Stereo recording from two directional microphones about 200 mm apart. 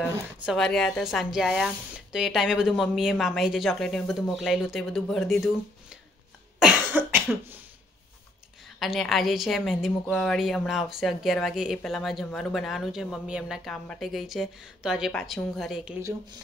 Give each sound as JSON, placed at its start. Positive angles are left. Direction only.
{"t": 0.0, "sound": "speech", "side_deg": 0}
{"t": 6.6, "sound": "cough", "side_deg": -10}
{"t": 8.7, "sound": "speech", "side_deg": 0}
{"t": 16.0, "sound": "speech", "side_deg": -15}